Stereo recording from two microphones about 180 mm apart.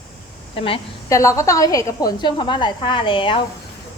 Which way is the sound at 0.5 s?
30° left (ahead or behind).